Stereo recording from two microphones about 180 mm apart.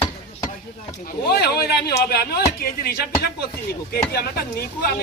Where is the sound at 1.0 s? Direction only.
60° left (ahead or behind).